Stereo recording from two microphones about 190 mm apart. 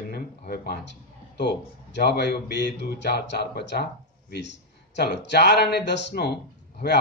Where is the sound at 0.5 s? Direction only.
60° left (ahead or behind).